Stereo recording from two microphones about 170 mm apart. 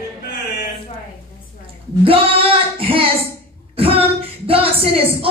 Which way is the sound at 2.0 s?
35° right (ahead or behind).